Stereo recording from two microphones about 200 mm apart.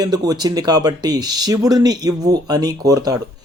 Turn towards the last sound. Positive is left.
turn(degrees=-20)  # may be behind; listen again after turning